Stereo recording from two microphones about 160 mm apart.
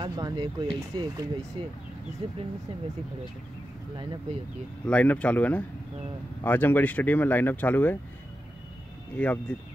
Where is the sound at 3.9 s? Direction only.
30° right (ahead or behind).